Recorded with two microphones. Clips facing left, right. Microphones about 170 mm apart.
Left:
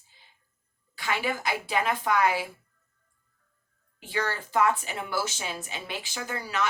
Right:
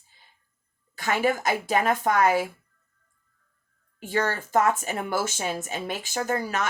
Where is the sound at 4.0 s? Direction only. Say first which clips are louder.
Right 5 dB; 45° right (ahead or behind).